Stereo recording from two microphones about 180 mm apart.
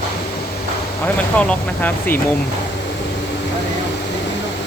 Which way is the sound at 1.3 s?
10° left (ahead or behind).